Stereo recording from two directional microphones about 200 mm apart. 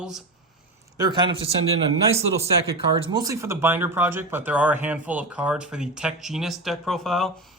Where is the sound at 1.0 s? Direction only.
20° right (ahead or behind); by 7.3 s centre (ahead or behind).